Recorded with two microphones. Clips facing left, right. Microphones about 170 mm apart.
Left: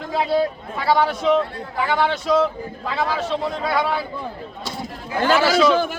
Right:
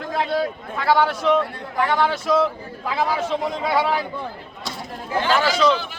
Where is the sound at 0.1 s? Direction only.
5° left (ahead or behind).